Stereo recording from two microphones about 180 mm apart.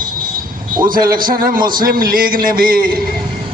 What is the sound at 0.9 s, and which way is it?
A man's voice, 50° right (ahead or behind).